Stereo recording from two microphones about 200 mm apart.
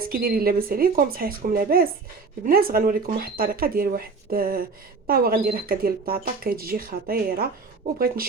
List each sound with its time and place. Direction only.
0.0 s speech: 45° right (ahead or behind)